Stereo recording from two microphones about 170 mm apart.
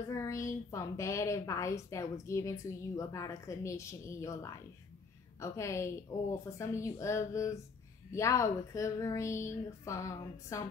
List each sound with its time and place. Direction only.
0.1 s a woman's voice: 20° left (ahead or behind)